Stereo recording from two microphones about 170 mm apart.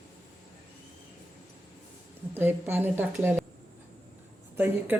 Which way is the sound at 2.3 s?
10° right (ahead or behind).